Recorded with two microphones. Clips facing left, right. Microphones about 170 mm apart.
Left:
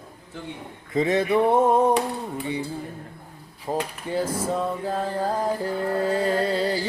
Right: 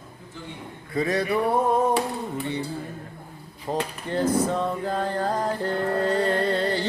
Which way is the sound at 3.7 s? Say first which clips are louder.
Left 1 dB; 5° left (ahead or behind).